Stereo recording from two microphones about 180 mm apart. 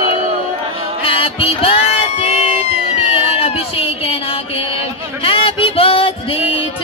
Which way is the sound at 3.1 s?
30° left (ahead or behind).